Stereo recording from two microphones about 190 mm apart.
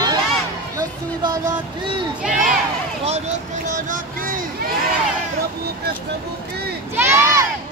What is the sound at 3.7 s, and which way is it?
Speech, 45° right (ahead or behind).